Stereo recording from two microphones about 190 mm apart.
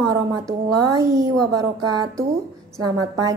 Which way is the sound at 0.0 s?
20° right (ahead or behind).